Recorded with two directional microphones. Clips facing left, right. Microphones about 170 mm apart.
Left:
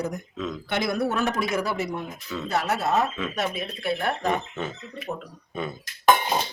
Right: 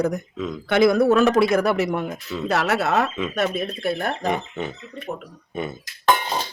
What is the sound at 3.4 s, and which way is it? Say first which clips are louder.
Speech: right 7 dB; 45° right (ahead or behind).